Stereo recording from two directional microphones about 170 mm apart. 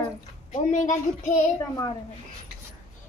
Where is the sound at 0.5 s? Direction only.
45° left (ahead or behind).